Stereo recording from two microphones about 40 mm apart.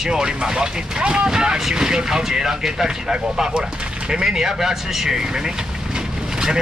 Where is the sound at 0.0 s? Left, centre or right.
Centre.